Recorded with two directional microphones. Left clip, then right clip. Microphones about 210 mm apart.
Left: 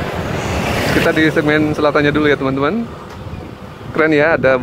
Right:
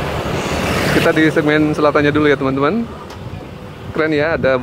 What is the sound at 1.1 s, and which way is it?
Speech, 5° left (ahead or behind).